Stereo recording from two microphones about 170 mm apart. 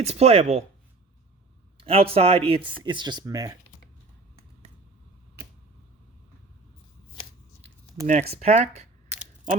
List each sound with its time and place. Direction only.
0.0 s speech: 40° right (ahead or behind)
1.8 s speech: 35° right (ahead or behind)
8.0 s speech: 40° right (ahead or behind)